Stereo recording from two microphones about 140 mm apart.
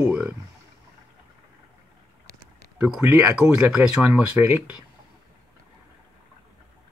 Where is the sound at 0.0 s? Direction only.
10° right (ahead or behind).